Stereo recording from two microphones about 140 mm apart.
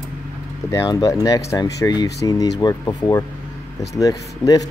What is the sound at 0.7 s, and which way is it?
Speech, 25° left (ahead or behind).